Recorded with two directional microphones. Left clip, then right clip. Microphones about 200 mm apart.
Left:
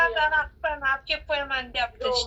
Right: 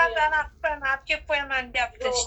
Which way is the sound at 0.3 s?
15° left (ahead or behind).